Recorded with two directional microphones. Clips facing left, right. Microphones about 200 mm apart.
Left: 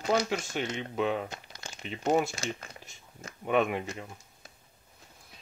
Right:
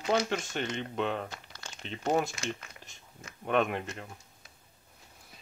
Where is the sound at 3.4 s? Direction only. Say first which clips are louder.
Left 1 dB; 5° left (ahead or behind).